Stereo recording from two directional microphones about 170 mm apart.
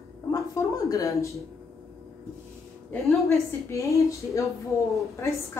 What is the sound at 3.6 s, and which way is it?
A woman's voice, 20° left (ahead or behind).